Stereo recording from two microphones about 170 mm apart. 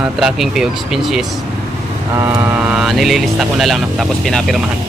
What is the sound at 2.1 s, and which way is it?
Speech, 15° right (ahead or behind).